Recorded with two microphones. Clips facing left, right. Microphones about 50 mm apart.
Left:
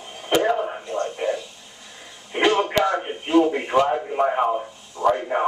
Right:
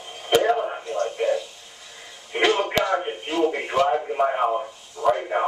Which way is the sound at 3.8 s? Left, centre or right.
Centre.